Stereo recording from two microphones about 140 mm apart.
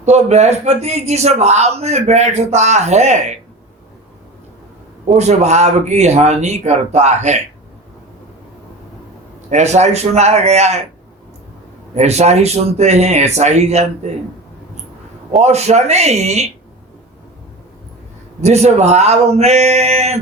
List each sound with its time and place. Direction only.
0.0 s a man's voice: 55° right (ahead or behind)
5.0 s a man's voice: 50° right (ahead or behind)
9.5 s a man's voice: 55° right (ahead or behind)
11.9 s a man's voice: 50° right (ahead or behind)
15.4 s a man's voice: 50° right (ahead or behind)
18.4 s a man's voice: 50° right (ahead or behind)